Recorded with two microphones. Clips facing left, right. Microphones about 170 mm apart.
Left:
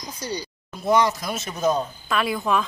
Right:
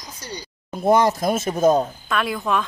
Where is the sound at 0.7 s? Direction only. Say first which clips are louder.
Right 3 dB; 50° right (ahead or behind).